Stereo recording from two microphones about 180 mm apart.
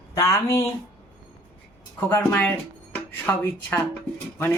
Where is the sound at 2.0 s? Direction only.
10° left (ahead or behind).